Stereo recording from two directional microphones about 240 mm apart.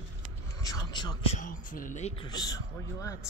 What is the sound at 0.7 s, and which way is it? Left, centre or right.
A man's voice, centre.